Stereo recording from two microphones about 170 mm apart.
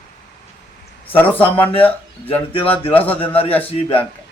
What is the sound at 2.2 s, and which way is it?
Speech, 30° left (ahead or behind).